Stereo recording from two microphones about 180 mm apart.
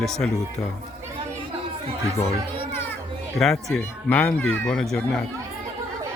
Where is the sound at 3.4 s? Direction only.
Centre (ahead or behind).